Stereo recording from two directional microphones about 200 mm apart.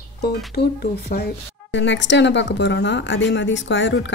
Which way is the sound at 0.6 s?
55° left (ahead or behind).